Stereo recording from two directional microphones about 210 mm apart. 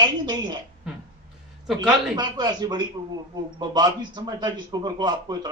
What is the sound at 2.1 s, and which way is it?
A woman's voice, 20° right (ahead or behind).